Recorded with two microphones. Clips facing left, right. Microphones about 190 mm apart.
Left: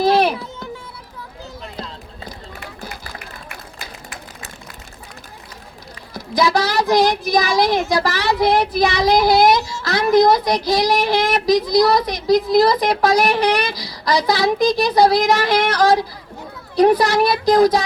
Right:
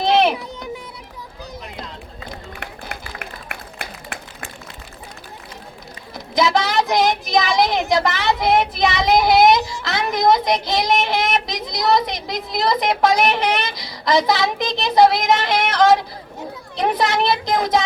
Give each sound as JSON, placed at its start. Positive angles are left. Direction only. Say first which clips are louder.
{"t": 0.1, "sound": "a sound", "louder": "even", "side_deg": -20}
{"t": 2.3, "sound": "run", "louder": "right 1 dB", "side_deg": -65}
{"t": 6.1, "sound": "speech", "louder": "left 1 dB", "side_deg": -20}